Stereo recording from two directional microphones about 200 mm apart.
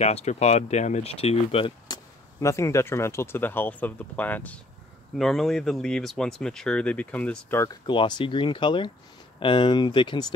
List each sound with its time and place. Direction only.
0.0 s speech: 35° left (ahead or behind)
2.4 s speech: 15° left (ahead or behind)
7.8 s speech: 25° left (ahead or behind)